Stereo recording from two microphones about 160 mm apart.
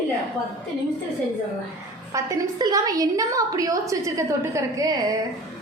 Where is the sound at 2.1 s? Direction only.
20° right (ahead or behind).